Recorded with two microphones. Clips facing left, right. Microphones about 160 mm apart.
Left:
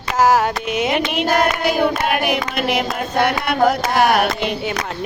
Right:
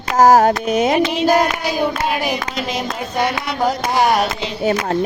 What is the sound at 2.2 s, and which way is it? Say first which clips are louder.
Speech: left 2 dB; 65° left (ahead or behind).